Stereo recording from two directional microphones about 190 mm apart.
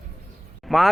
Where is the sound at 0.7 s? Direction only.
Centre (ahead or behind).